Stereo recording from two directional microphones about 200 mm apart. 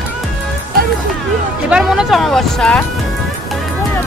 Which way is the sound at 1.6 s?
5° right (ahead or behind).